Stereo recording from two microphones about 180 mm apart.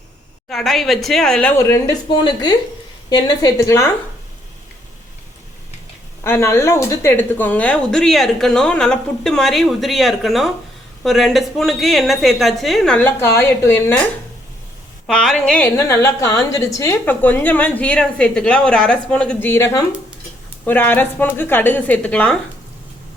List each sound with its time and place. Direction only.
0.4 s a woman's voice: centre (ahead or behind)
6.2 s a woman's voice: 15° left (ahead or behind)
20.7 s a woman's voice: 10° left (ahead or behind)